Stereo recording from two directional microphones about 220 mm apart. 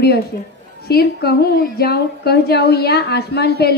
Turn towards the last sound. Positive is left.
turn(degrees=45)  # may be behind; listen again after turning